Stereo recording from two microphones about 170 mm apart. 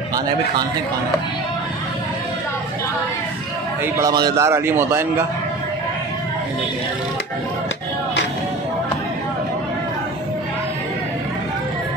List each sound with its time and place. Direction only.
3.8 s a man's voice: 20° right (ahead or behind)